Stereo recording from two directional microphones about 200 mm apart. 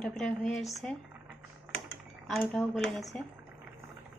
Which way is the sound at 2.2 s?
Centre (ahead or behind).